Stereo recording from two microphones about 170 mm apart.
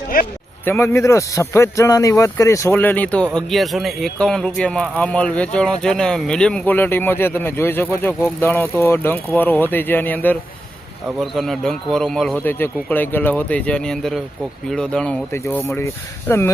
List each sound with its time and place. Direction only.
0.1 s speech: 60° left (ahead or behind)
0.6 s a man's voice: 15° left (ahead or behind)